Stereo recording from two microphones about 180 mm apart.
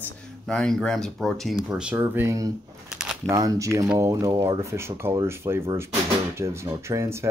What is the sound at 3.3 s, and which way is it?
Speech, 20° right (ahead or behind).